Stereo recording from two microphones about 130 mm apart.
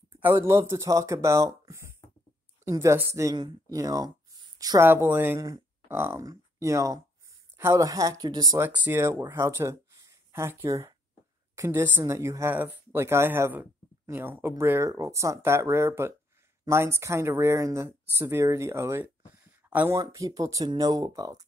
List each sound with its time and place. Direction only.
0.2 s speech: 20° right (ahead or behind)
3.3 s speech: 30° right (ahead or behind)
8.5 s speech: 15° right (ahead or behind)
20.0 s speech: 25° right (ahead or behind)